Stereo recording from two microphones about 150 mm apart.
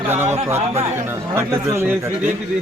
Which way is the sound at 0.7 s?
45° right (ahead or behind).